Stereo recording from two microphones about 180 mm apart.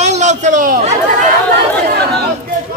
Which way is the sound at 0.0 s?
40° right (ahead or behind).